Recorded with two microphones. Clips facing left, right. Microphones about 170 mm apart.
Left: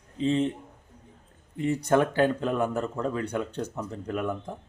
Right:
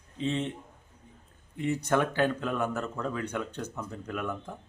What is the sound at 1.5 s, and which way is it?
Speech, 30° left (ahead or behind).